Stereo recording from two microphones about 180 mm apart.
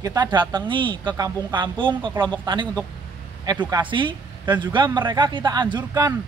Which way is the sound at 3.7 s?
25° right (ahead or behind).